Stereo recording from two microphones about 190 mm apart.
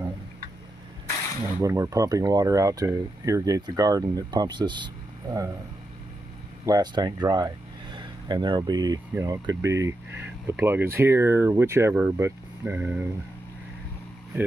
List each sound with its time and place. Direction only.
1.6 s speech: 15° right (ahead or behind)
6.6 s speech: 20° right (ahead or behind)